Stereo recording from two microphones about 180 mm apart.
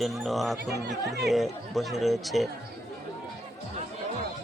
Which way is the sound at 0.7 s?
65° right (ahead or behind).